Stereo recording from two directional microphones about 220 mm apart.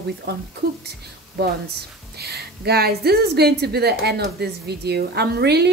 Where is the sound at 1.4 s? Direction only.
50° right (ahead or behind).